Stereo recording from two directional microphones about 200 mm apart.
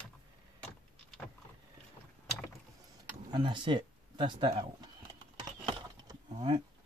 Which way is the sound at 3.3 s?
25° right (ahead or behind).